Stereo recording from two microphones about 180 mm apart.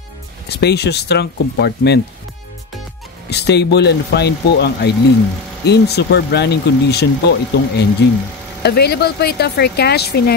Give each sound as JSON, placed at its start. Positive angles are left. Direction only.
{"t": 0.6, "sound": "speech", "side_deg": 65}
{"t": 3.3, "sound": "speech", "side_deg": 70}